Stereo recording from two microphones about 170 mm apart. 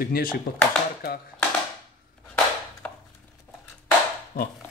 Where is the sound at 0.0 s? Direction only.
60° left (ahead or behind).